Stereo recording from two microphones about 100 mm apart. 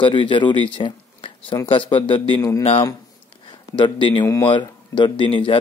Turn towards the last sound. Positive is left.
turn(degrees=60)  # may be behind; listen again after turning